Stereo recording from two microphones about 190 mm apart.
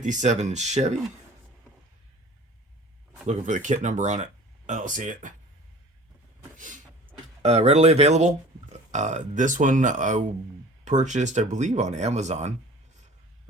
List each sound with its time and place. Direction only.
0.0 s speech: 40° right (ahead or behind)
3.2 s speech: 40° right (ahead or behind)
6.6 s vehicle: 40° right (ahead or behind)
7.4 s speech: 35° right (ahead or behind)